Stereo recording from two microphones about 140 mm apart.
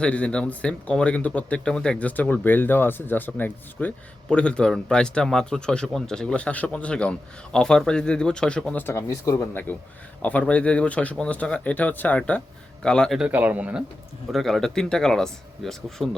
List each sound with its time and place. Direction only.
0.0 s speech: 10° left (ahead or behind)
8.9 s speech: 20° left (ahead or behind); by 13.8 s 10° right (ahead or behind)
14.3 s speech: centre (ahead or behind)